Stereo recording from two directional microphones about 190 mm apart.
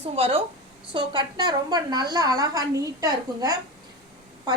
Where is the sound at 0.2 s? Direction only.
30° right (ahead or behind).